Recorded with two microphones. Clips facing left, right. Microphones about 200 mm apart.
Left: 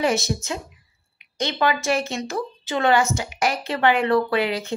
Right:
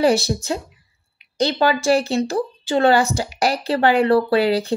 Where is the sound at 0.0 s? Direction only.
35° right (ahead or behind).